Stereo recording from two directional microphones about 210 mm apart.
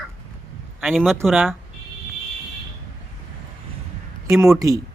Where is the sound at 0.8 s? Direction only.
Centre (ahead or behind).